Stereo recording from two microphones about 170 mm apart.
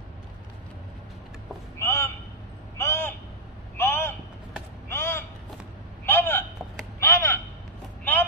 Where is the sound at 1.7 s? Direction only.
15° left (ahead or behind).